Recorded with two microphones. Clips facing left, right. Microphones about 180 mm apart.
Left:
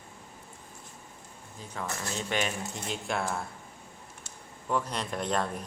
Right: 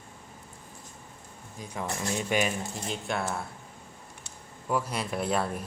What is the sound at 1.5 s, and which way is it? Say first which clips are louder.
Speech: right 3 dB; 15° right (ahead or behind).